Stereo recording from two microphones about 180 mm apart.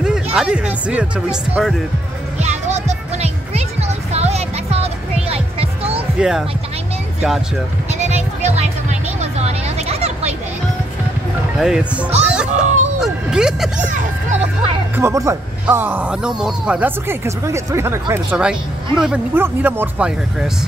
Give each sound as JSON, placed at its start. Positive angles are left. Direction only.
{"t": 0.0, "sound": "speech", "side_deg": -5}
{"t": 2.3, "sound": "music", "side_deg": -40}
{"t": 6.1, "sound": "speech", "side_deg": -5}
{"t": 8.0, "sound": "music", "side_deg": -40}
{"t": 11.5, "sound": "speech", "side_deg": -5}
{"t": 12.4, "sound": "music", "side_deg": -40}
{"t": 13.0, "sound": "speech", "side_deg": -5}
{"t": 13.7, "sound": "music", "side_deg": -45}
{"t": 15.0, "sound": "speech", "side_deg": -15}